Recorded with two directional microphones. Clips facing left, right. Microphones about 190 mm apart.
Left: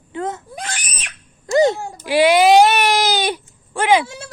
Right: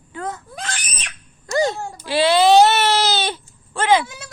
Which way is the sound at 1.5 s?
20° left (ahead or behind).